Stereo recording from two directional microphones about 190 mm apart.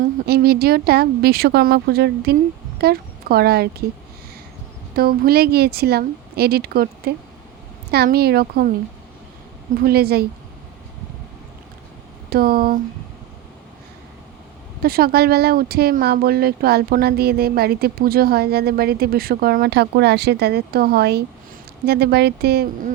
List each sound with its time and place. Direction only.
0.0 s a woman's voice: 55° right (ahead or behind)
4.9 s speech: 55° right (ahead or behind)
9.7 s speech: 55° right (ahead or behind)
12.3 s speech: 50° right (ahead or behind)
14.8 s speech: 55° right (ahead or behind)